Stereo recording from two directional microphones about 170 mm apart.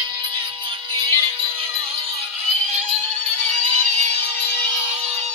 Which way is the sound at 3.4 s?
40° right (ahead or behind).